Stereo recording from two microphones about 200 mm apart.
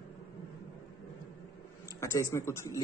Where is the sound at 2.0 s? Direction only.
15° left (ahead or behind).